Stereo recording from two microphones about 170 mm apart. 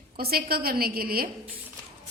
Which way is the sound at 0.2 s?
65° right (ahead or behind).